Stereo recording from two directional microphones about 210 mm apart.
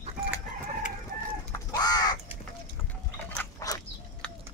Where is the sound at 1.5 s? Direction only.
20° left (ahead or behind).